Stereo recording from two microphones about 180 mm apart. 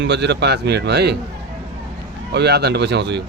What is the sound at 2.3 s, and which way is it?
Speech, 65° right (ahead or behind).